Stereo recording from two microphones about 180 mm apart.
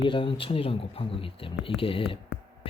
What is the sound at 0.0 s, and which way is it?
Speech, 30° left (ahead or behind).